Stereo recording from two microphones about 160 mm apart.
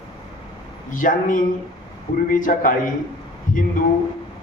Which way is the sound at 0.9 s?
55° left (ahead or behind).